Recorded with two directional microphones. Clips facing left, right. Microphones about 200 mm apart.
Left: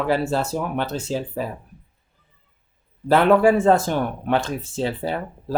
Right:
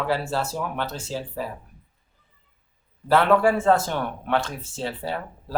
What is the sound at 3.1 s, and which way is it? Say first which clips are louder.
Speech: left 3 dB; 15° left (ahead or behind).